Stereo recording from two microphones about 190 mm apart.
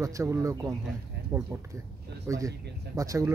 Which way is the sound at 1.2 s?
65° right (ahead or behind).